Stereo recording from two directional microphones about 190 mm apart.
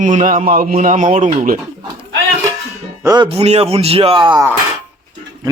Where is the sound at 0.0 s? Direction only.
40° right (ahead or behind).